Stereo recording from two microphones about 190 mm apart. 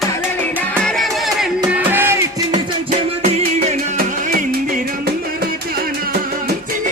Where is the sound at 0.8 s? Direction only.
Centre (ahead or behind).